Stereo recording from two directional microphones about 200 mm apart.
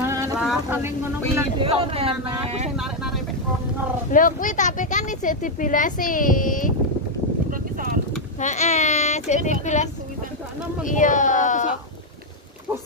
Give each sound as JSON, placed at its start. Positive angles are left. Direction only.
{"t": 0.0, "sound": "boat", "side_deg": -15}
{"t": 0.7, "sound": "speech", "side_deg": -10}
{"t": 1.6, "sound": "speech", "side_deg": -30}
{"t": 4.1, "sound": "a woman's voice", "side_deg": 40}
{"t": 8.4, "sound": "a woman's voice", "side_deg": 35}
{"t": 10.9, "sound": "a woman's voice", "side_deg": 40}